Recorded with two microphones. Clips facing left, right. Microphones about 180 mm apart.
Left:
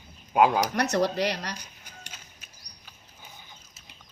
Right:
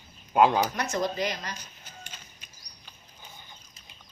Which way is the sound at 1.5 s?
10° left (ahead or behind).